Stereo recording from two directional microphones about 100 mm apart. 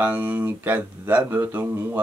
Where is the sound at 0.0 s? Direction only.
20° right (ahead or behind).